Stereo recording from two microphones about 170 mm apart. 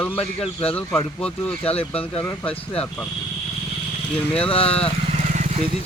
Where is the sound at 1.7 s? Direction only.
35° left (ahead or behind).